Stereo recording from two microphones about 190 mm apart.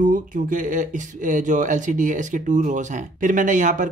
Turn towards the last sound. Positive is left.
turn(degrees=-40)  # may be behind; listen again after turning